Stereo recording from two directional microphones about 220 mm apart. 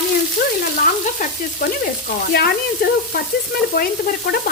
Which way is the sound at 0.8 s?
40° left (ahead or behind).